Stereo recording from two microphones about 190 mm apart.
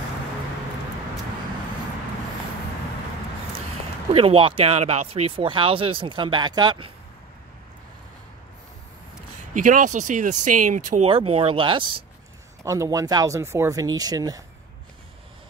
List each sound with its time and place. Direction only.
4.1 s speech: 30° right (ahead or behind)
9.5 s speech: 45° right (ahead or behind); by 12.0 s 25° right (ahead or behind)
12.6 s speech: 15° right (ahead or behind)